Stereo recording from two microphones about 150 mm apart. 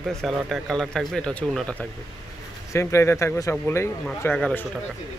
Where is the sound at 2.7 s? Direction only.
20° left (ahead or behind).